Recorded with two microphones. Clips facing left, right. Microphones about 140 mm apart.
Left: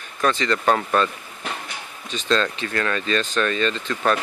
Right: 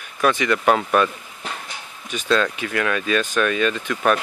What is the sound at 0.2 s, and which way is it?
Speech, 10° right (ahead or behind).